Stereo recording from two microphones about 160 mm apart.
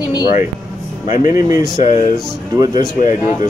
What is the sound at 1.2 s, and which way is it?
Speech, 25° right (ahead or behind).